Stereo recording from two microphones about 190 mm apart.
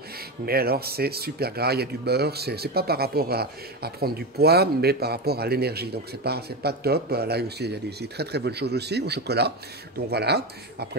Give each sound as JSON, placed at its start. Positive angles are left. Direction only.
{"t": 0.5, "sound": "speech", "side_deg": -55}